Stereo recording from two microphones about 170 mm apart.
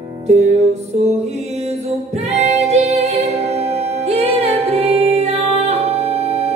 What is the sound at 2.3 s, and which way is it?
Music, 40° right (ahead or behind).